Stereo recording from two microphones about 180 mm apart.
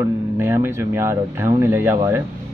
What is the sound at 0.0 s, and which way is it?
Speech, 15° right (ahead or behind).